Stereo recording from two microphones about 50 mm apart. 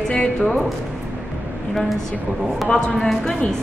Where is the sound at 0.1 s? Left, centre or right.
Centre.